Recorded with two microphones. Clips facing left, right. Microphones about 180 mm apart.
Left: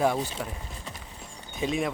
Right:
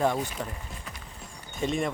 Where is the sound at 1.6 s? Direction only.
Centre (ahead or behind).